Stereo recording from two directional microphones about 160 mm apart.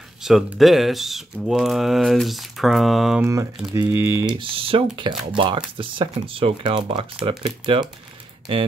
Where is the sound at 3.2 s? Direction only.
20° right (ahead or behind).